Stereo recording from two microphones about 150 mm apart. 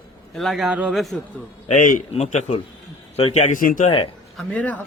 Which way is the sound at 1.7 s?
60° left (ahead or behind).